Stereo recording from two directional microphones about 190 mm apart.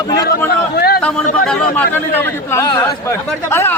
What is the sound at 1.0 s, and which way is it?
Speech, 10° left (ahead or behind).